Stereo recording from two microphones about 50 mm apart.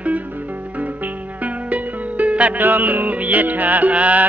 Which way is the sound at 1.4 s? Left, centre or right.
Right.